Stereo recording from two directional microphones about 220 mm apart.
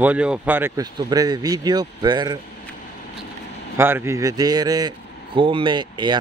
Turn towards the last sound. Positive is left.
turn(degrees=-20)  # may be behind; listen again after turning